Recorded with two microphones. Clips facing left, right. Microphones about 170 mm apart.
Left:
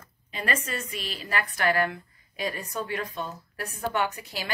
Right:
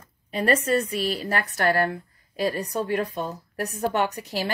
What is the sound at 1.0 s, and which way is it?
A woman's voice, 45° right (ahead or behind).